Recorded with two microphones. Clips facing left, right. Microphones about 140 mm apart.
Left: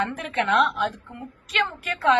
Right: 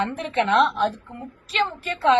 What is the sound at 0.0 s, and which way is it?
A woman's voice, 25° right (ahead or behind).